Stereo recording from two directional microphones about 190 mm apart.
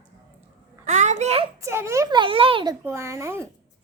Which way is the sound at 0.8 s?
40° right (ahead or behind).